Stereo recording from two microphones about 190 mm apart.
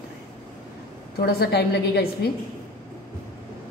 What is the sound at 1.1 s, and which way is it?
A woman's voice, 55° left (ahead or behind).